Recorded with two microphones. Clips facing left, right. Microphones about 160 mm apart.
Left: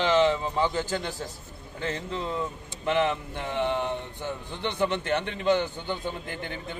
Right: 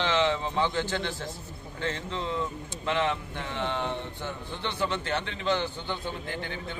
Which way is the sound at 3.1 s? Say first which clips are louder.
Left 4 dB; 15° left (ahead or behind).